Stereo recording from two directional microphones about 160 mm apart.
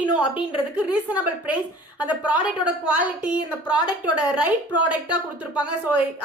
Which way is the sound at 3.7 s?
30° left (ahead or behind).